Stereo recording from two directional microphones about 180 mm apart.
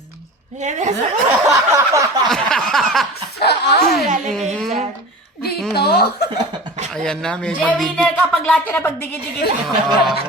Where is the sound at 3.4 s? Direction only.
65° left (ahead or behind).